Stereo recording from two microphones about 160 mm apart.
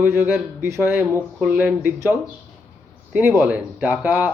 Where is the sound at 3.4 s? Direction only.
10° right (ahead or behind).